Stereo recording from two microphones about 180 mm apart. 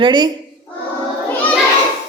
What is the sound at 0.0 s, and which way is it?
Speech, 25° right (ahead or behind).